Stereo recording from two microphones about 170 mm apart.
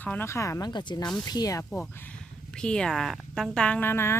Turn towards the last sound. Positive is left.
turn(degrees=15)  # may be behind; listen again after turning